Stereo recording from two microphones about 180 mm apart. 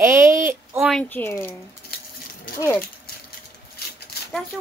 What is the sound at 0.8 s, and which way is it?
Speech, 5° left (ahead or behind).